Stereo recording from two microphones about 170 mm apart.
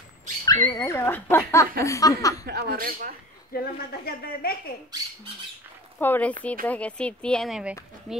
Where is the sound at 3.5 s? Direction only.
65° left (ahead or behind).